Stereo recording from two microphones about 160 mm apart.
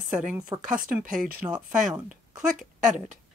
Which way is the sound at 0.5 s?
25° right (ahead or behind).